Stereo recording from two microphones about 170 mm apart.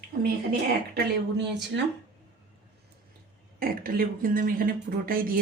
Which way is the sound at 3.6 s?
60° right (ahead or behind).